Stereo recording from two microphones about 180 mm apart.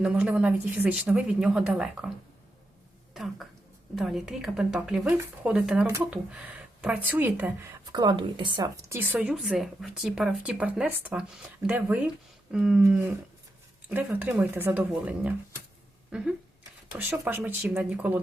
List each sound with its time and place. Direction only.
0.0 s speech: 5° right (ahead or behind)
3.9 s speech: centre (ahead or behind)
7.9 s speech: 25° right (ahead or behind); by 12.8 s 5° right (ahead or behind)
13.9 s speech: 10° right (ahead or behind)